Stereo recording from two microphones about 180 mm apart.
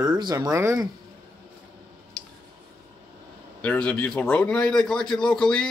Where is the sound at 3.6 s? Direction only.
5° left (ahead or behind).